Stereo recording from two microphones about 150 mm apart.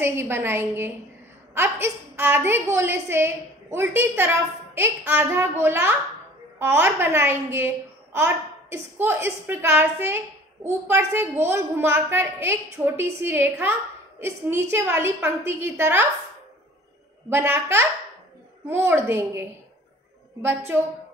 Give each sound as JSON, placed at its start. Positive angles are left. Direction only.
{"t": 0.0, "sound": "a woman's voice", "side_deg": -15}
{"t": 17.3, "sound": "a woman's voice", "side_deg": -15}
{"t": 20.4, "sound": "a woman's voice", "side_deg": -15}